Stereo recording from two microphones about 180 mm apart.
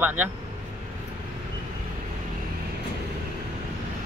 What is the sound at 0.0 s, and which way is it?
Speech, 10° right (ahead or behind).